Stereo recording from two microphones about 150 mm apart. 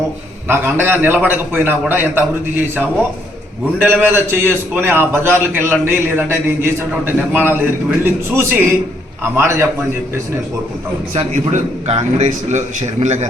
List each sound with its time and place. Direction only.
0.4 s a man's voice: 15° right (ahead or behind)
3.8 s a man's voice: 15° right (ahead or behind)
11.1 s a man's voice: 45° right (ahead or behind)